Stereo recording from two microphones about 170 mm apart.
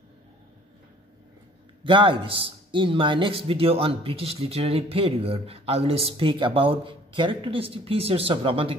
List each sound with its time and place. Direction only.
1.9 s a man's voice: 30° right (ahead or behind)